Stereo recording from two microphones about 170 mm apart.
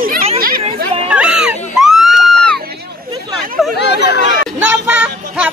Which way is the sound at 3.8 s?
80° left.